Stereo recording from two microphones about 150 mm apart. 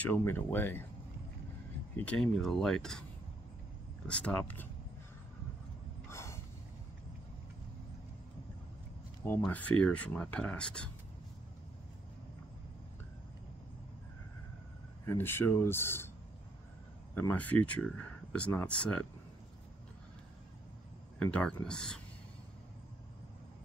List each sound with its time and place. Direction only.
0.0 s speech: 15° left (ahead or behind)
2.0 s speech: 10° left (ahead or behind)
4.1 s speech: 10° left (ahead or behind)
6.0 s a sound: 20° left (ahead or behind)
9.5 s speech: 10° left (ahead or behind)
15.0 s speech: 15° left (ahead or behind)
17.1 s speech: 15° left (ahead or behind)
21.2 s speech: 10° left (ahead or behind)